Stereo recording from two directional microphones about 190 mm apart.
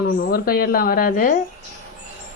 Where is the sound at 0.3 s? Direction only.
50° left (ahead or behind).